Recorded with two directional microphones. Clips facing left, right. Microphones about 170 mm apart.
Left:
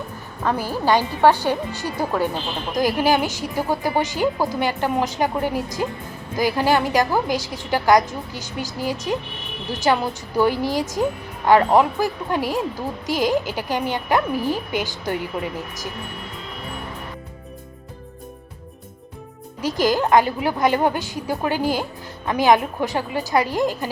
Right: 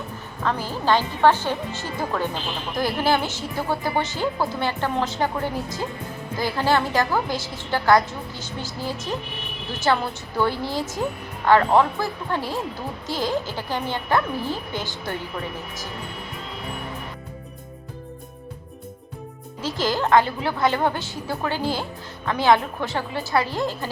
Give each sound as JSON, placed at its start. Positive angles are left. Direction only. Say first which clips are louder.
{"t": 0.4, "sound": "speech", "louder": "left 2 dB", "side_deg": 10}
{"t": 19.6, "sound": "speech", "louder": "left 4 dB", "side_deg": 15}